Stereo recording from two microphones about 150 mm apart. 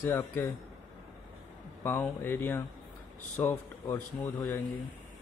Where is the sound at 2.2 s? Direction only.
15° left (ahead or behind).